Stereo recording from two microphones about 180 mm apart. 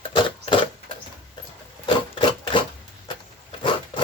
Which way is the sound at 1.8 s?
25° left (ahead or behind).